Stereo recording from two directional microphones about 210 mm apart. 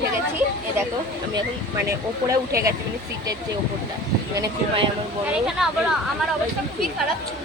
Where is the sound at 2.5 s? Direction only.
15° right (ahead or behind).